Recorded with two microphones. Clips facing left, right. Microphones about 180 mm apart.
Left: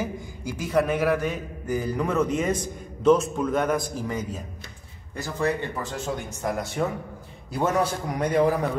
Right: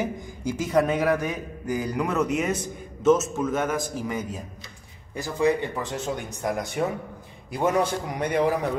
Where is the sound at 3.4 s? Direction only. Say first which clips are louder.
Left 2 dB; 5° right (ahead or behind).